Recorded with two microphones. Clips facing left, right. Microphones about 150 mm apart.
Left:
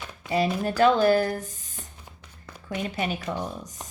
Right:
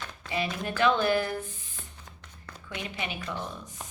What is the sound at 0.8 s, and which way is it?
Speech, 40° left (ahead or behind).